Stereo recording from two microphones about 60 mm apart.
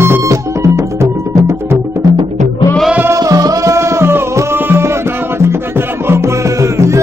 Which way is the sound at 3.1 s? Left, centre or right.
Right.